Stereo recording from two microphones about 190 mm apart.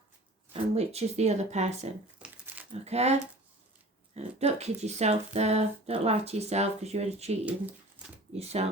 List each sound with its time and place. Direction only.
0.5 s speech: 35° right (ahead or behind)
2.1 s crumpling: 5° right (ahead or behind)
2.8 s speech: 35° right (ahead or behind)
8.4 s speech: 35° right (ahead or behind)